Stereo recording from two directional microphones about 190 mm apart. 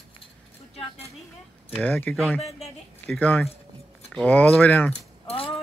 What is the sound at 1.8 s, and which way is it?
Speech, 5° left (ahead or behind).